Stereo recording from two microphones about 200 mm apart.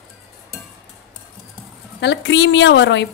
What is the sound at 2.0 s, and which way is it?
A woman's voice, 60° left (ahead or behind).